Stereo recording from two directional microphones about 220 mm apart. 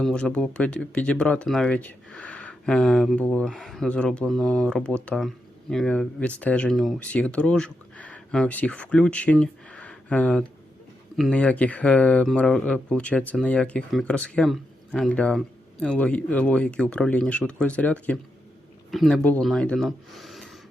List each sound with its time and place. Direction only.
0.0 s speech: 5° left (ahead or behind)